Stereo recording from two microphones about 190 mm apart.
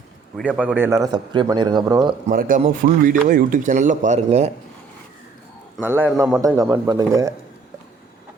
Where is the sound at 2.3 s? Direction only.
45° right (ahead or behind).